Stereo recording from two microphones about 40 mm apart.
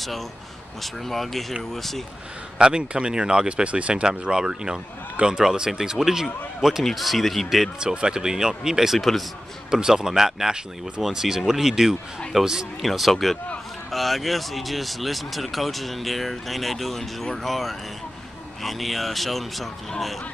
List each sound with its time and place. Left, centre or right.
1.0 s speech: centre
2.6 s speech: right
6.8 s speech: centre
7.8 s speech: right
8.9 s speech: centre
9.7 s speech: centre
12.8 s speech: centre